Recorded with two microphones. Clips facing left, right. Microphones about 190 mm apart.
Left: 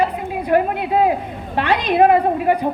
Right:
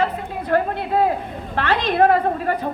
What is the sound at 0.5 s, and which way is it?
A woman's voice, 15° left (ahead or behind).